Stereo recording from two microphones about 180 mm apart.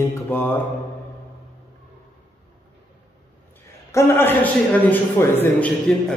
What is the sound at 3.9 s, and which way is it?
A man's voice, 15° left (ahead or behind).